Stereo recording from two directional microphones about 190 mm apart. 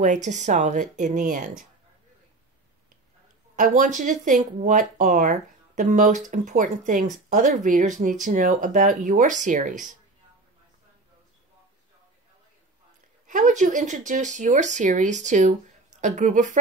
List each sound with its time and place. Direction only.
0.0 s speech: 40° right (ahead or behind)
3.5 s speech: 40° right (ahead or behind)
13.3 s speech: 40° right (ahead or behind)